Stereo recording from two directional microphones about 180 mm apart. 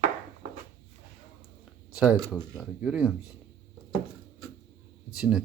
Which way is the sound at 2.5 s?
5° right (ahead or behind).